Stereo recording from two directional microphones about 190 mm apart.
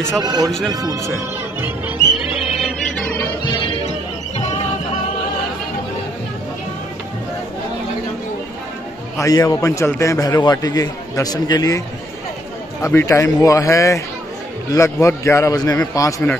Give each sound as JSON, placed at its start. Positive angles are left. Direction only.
{"t": 0.2, "sound": "speech", "side_deg": -20}
{"t": 2.1, "sound": "music", "side_deg": 0}
{"t": 3.2, "sound": "music", "side_deg": 25}
{"t": 9.2, "sound": "a man's voice", "side_deg": 20}
{"t": 12.8, "sound": "a man's voice", "side_deg": 15}